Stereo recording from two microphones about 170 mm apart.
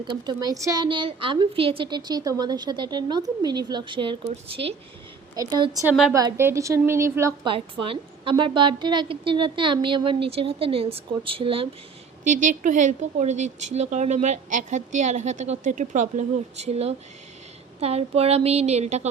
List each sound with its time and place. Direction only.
0.0 s a woman's voice: 25° right (ahead or behind)
5.3 s a woman's voice: 20° right (ahead or behind)
7.4 s a woman's voice: 30° right (ahead or behind)
12.2 s a woman's voice: 45° right (ahead or behind)